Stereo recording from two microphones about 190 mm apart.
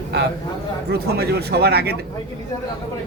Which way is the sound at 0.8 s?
55° right (ahead or behind).